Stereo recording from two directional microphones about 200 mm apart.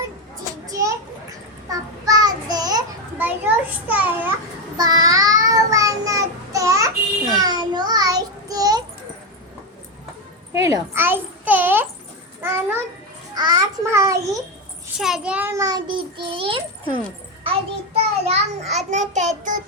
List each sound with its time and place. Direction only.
0.7 s children playing: 15° right (ahead or behind)
1.7 s child singing: 20° right (ahead or behind)
3.2 s a child's voice: 10° right (ahead or behind)
4.8 s child singing: 20° right (ahead or behind)
10.5 s a sound: 15° right (ahead or behind)
14.9 s a child's voice: centre (ahead or behind); by 19.6 s 40° right (ahead or behind)